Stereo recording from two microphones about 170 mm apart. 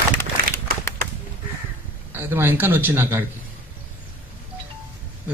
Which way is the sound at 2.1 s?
15° right (ahead or behind).